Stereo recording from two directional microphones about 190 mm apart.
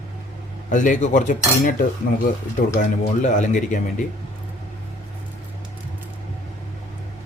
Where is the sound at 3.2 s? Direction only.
40° left (ahead or behind).